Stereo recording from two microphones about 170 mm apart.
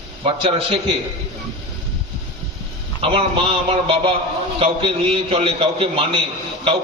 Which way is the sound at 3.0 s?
30° right (ahead or behind).